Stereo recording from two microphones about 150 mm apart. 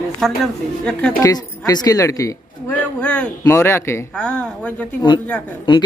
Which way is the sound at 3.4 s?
20° left (ahead or behind).